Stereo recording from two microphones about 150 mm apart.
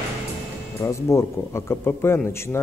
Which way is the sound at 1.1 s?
20° left (ahead or behind).